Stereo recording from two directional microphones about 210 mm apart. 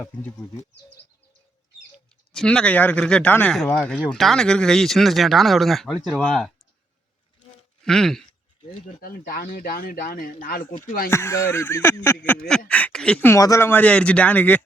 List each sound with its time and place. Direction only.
0.0 s speech: 10° left (ahead or behind)
2.3 s speech: 5° left (ahead or behind)
7.9 s speech: centre (ahead or behind)
9.0 s speech: 45° left (ahead or behind)
11.1 s speech: 10° left (ahead or behind)